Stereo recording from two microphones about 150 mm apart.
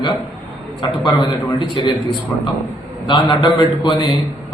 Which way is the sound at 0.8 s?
30° left (ahead or behind).